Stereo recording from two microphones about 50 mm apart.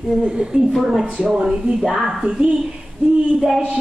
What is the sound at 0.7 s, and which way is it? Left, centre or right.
A woman's voice, centre.